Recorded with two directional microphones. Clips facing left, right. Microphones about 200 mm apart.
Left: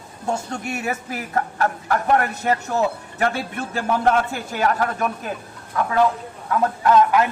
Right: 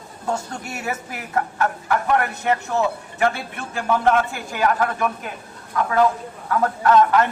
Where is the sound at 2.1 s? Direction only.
40° left (ahead or behind).